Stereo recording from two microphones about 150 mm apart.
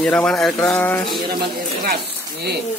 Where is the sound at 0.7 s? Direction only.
10° left (ahead or behind).